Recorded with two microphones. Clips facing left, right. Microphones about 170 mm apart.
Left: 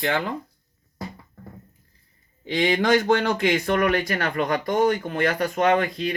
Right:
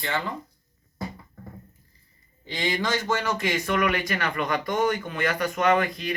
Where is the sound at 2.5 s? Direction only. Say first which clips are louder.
Left 7 dB; 60° left (ahead or behind).